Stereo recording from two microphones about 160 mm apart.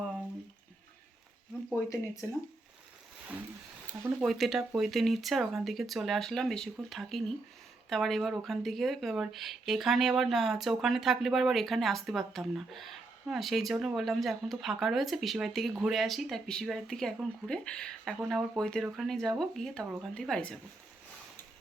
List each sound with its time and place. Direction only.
4.2 s speech: centre (ahead or behind)